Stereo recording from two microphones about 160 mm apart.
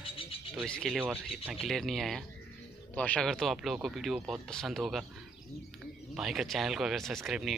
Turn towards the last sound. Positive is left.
turn(degrees=0)  # may be behind; listen again after turning